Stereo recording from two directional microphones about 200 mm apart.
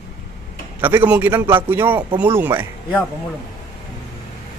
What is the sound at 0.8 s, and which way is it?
A man's voice, 10° right (ahead or behind).